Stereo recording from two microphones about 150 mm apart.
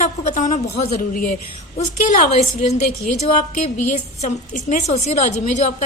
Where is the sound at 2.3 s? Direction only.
45° left (ahead or behind).